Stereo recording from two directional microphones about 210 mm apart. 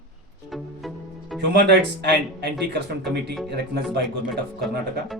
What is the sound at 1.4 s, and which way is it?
A man's voice, 55° right (ahead or behind).